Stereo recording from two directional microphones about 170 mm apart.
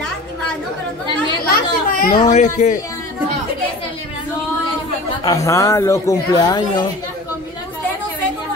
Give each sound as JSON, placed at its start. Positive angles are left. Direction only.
{"t": 1.5, "sound": "chatter", "side_deg": 60}
{"t": 2.2, "sound": "speech", "side_deg": 45}
{"t": 5.2, "sound": "speech", "side_deg": 20}